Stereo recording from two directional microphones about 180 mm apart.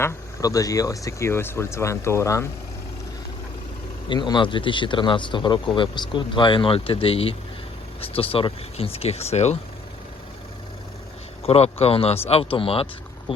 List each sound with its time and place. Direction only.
0.0 s speech: 20° left (ahead or behind)
4.1 s speech: 25° left (ahead or behind)
11.4 s speech: 35° left (ahead or behind)